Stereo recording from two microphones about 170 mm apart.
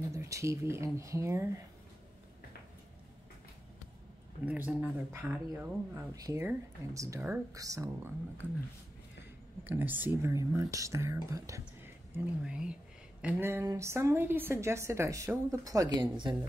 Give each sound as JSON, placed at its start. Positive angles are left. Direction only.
{"t": 0.1, "sound": "speech", "side_deg": -20}
{"t": 4.5, "sound": "speech", "side_deg": -10}
{"t": 9.7, "sound": "speech", "side_deg": -10}